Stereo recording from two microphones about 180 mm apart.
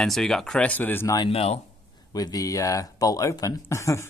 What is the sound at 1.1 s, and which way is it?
Speech, 30° left (ahead or behind).